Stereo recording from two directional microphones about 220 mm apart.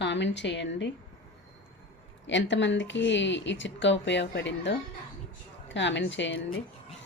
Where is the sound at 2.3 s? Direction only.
55° left (ahead or behind).